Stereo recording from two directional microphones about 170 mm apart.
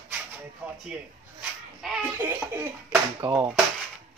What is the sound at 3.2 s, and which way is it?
Speech, 25° right (ahead or behind).